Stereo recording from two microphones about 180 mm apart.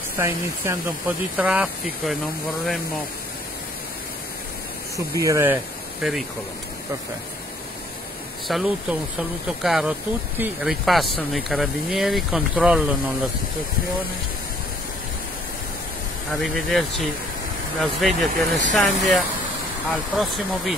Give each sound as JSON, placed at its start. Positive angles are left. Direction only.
{"t": 0.2, "sound": "speech", "side_deg": -15}
{"t": 4.9, "sound": "speech", "side_deg": -15}
{"t": 6.0, "sound": "speech", "side_deg": 0}
{"t": 8.5, "sound": "speech", "side_deg": 0}
{"t": 16.3, "sound": "speech", "side_deg": 0}